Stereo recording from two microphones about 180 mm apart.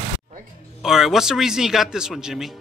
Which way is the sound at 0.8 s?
Centre (ahead or behind).